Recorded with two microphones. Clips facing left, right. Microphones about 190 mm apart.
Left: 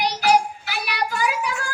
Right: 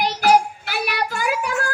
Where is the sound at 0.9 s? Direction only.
50° right (ahead or behind).